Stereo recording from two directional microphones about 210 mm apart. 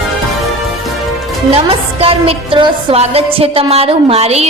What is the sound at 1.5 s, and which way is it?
Speech, 30° right (ahead or behind).